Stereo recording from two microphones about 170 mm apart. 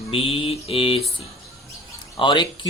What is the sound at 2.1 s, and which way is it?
Speech, 25° left (ahead or behind).